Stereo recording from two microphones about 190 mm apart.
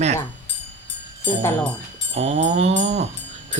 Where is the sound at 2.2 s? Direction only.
35° right (ahead or behind).